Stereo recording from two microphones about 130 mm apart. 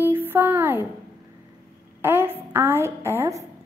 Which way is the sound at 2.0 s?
15° right (ahead or behind).